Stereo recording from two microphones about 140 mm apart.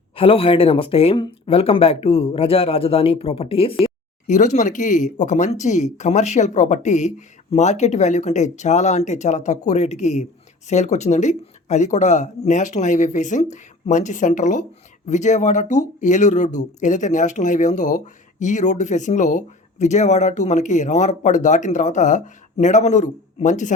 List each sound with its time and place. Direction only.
0.2 s a man's voice: 40° left (ahead or behind)
4.3 s speech: 60° left (ahead or behind)